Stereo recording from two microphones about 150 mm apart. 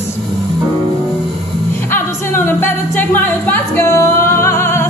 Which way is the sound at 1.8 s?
15° left (ahead or behind).